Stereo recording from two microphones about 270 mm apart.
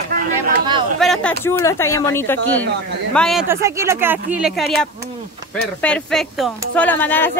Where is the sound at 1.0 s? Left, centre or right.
Centre.